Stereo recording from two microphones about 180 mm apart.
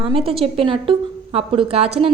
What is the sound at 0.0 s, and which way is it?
Speech, 30° right (ahead or behind).